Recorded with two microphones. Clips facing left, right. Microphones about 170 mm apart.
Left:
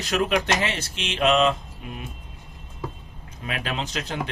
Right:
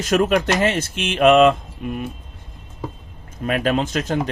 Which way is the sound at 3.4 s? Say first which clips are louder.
Right 10 dB; 50° right (ahead or behind).